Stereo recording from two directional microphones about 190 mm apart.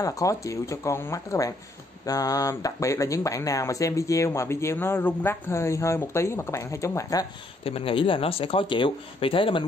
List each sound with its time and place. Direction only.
0.0 s speech: 15° left (ahead or behind)
7.6 s speech: 30° left (ahead or behind)